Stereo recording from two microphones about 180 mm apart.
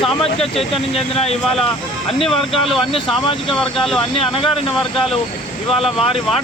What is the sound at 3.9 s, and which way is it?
Speech, 30° left (ahead or behind).